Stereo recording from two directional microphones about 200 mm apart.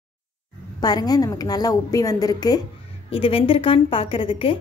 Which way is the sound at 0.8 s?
20° left (ahead or behind).